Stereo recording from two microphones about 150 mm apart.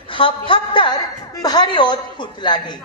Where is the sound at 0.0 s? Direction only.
35° left (ahead or behind).